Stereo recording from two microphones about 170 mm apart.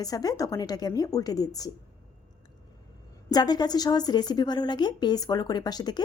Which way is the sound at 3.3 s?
25° left (ahead or behind).